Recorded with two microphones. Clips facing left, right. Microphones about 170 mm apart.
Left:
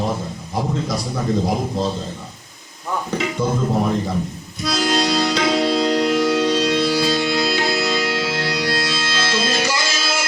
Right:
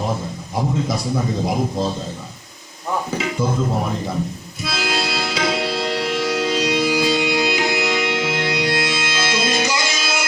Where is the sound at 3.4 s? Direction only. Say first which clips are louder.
Even; 5° right (ahead or behind).